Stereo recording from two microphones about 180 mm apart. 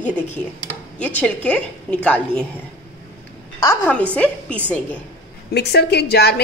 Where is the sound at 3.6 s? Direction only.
10° left (ahead or behind).